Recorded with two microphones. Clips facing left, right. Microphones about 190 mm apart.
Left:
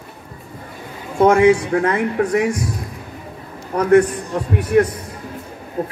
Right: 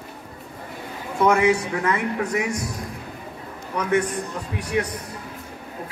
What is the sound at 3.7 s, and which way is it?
A man's voice, 60° left (ahead or behind).